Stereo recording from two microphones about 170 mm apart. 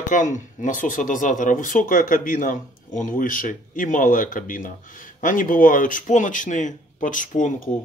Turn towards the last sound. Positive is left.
turn(degrees=50)  # may be behind; listen again after turning